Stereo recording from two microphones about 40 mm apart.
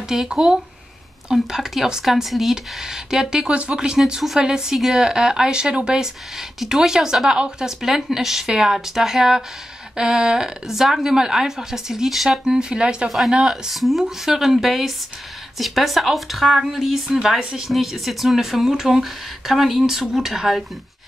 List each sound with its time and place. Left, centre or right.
0.1 s a woman's voice: centre
3.4 s speech: right
3.7 s a woman's voice: centre
7.6 s a woman's voice: centre
12.5 s speech: right
13.5 s speech: centre